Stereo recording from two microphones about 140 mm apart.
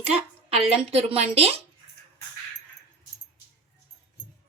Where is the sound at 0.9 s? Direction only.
45° right (ahead or behind).